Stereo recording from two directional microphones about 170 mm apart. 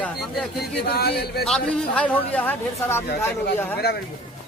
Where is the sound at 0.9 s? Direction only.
65° left (ahead or behind).